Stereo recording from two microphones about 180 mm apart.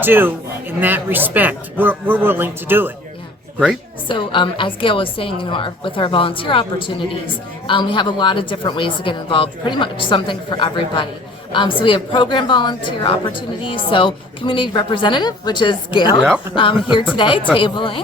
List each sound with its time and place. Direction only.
0.0 s a man's voice: 10° right (ahead or behind)
4.1 s a woman's voice: 25° left (ahead or behind)